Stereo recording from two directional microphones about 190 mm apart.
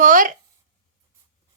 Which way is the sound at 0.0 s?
45° right (ahead or behind).